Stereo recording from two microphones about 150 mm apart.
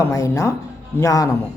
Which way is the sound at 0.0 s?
20° left (ahead or behind).